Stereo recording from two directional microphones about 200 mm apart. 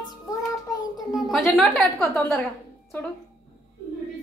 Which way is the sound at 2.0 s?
Centre (ahead or behind).